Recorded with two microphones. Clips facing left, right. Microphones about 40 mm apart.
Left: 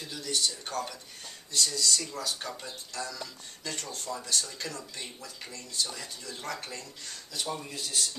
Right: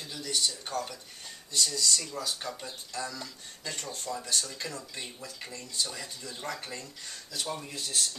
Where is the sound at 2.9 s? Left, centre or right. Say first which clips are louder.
Right 1 dB; centre.